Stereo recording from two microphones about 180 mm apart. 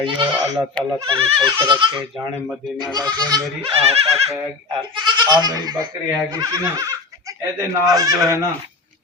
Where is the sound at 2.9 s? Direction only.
20° right (ahead or behind).